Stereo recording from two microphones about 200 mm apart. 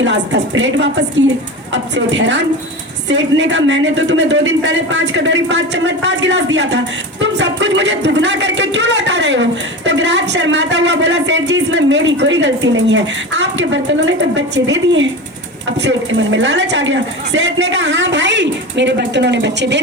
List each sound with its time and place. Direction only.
0.0 s speech: 65° right (ahead or behind)